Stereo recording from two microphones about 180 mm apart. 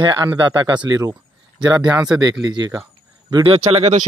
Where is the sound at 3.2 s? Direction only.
25° right (ahead or behind).